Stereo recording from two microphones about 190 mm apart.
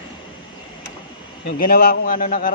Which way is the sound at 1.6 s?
50° left (ahead or behind).